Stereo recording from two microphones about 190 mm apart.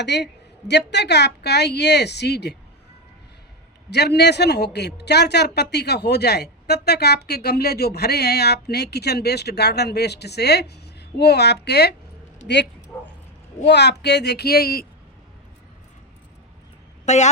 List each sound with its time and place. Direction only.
0.0 s a woman's voice: 65° left (ahead or behind)
3.8 s a woman's voice: 60° left (ahead or behind)
12.9 s bow-wow: 15° left (ahead or behind)
13.7 s a woman's voice: 65° left (ahead or behind)
17.1 s a woman's voice: 35° left (ahead or behind)